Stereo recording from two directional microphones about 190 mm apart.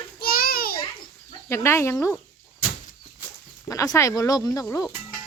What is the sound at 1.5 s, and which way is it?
Speech, 15° left (ahead or behind).